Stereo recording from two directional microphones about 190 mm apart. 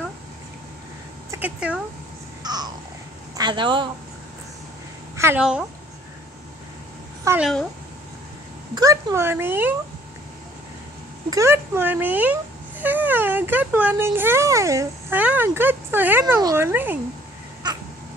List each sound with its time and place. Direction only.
1.3 s speech: 5° right (ahead or behind)
2.4 s babbling: 20° right (ahead or behind)
3.3 s speech: 25° right (ahead or behind)
5.1 s a woman's voice: 10° right (ahead or behind)
7.2 s speech: 5° right (ahead or behind)
8.7 s a woman's voice: 20° right (ahead or behind)
11.2 s speech: 15° right (ahead or behind)
17.6 s cat: 20° right (ahead or behind)